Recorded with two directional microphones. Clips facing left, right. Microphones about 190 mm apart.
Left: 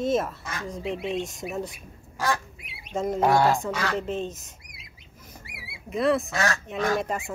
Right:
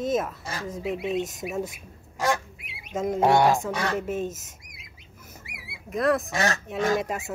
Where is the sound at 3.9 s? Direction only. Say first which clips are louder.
Right 1 dB; 10° right (ahead or behind).